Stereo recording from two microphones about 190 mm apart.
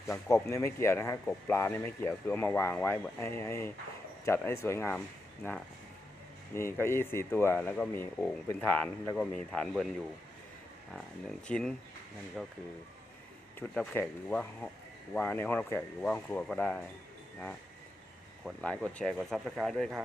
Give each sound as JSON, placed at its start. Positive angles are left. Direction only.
{"t": 0.4, "sound": "speech", "side_deg": 15}
{"t": 6.5, "sound": "speech", "side_deg": 15}
{"t": 10.9, "sound": "speech", "side_deg": 5}
{"t": 13.6, "sound": "speech", "side_deg": 10}
{"t": 18.4, "sound": "speech", "side_deg": 5}